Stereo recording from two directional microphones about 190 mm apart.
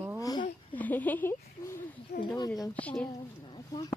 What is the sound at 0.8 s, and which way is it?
Speech, 10° left (ahead or behind).